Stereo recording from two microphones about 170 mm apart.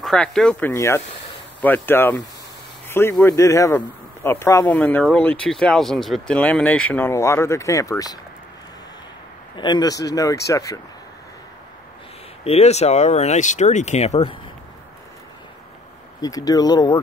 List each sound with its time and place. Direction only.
0.0 s a man's voice: 5° left (ahead or behind); by 8.2 s 20° left (ahead or behind)
9.6 s speech: 25° left (ahead or behind)
12.4 s speech: 40° left (ahead or behind)
16.2 s speech: 20° left (ahead or behind)